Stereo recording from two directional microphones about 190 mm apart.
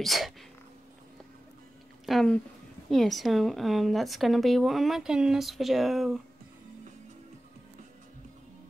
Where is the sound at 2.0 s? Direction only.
5° left (ahead or behind).